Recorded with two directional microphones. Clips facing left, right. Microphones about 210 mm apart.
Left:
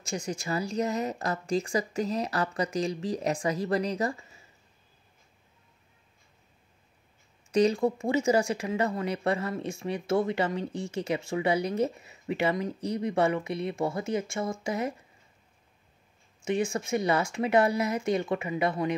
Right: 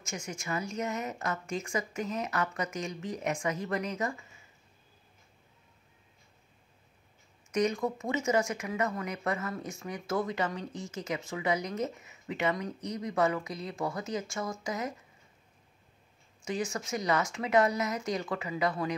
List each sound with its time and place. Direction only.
0.0 s a woman's voice: 35° left (ahead or behind)
7.5 s speech: 30° left (ahead or behind)
16.4 s speech: 25° left (ahead or behind)